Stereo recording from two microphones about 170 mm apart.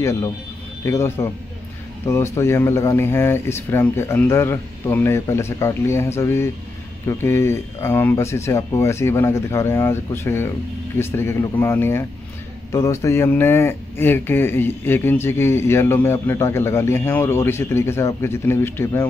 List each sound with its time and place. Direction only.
0.0 s speech: 15° left (ahead or behind)